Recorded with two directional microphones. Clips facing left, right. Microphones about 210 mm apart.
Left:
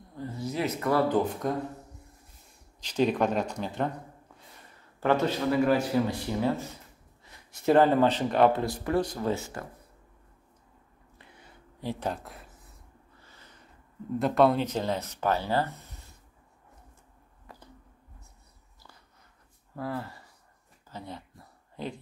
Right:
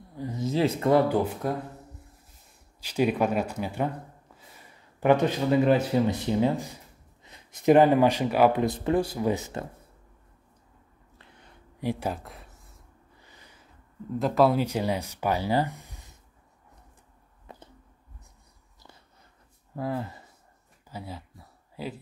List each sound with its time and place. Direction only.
0.1 s speech: 15° right (ahead or behind)
1.0 s speech: 10° right (ahead or behind)
2.8 s speech: 10° right (ahead or behind)
5.0 s speech: 15° right (ahead or behind)
8.6 s speech: 20° right (ahead or behind)
9.0 s speech: 10° right (ahead or behind)
11.8 s a sound: 10° right (ahead or behind)
13.2 s a sound: 15° right (ahead or behind)
14.1 s speech: centre (ahead or behind)
17.5 s a sound: 20° right (ahead or behind)
19.7 s speech: 20° right (ahead or behind)
20.9 s a sound: 5° right (ahead or behind)